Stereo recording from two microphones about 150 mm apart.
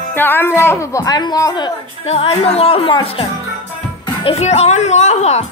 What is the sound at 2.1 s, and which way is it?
Speech, 40° left (ahead or behind).